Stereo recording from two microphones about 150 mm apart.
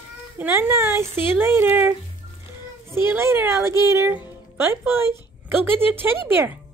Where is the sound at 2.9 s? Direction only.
15° right (ahead or behind).